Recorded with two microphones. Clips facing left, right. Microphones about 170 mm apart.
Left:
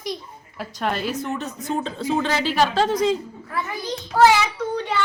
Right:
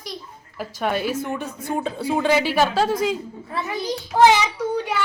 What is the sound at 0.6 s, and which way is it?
A woman's voice, 5° right (ahead or behind).